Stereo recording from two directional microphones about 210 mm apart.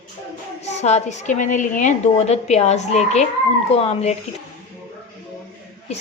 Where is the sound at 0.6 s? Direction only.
30° left (ahead or behind).